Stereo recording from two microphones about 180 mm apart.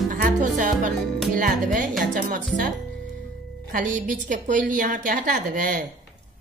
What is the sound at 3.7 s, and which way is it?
A woman's voice, 45° right (ahead or behind).